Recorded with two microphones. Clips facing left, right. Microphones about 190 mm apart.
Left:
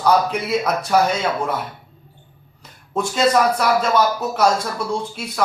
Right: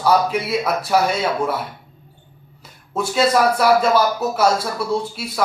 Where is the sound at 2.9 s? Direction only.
5° right (ahead or behind).